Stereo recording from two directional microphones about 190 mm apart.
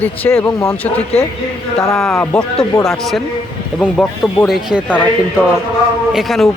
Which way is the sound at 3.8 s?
5° left (ahead or behind).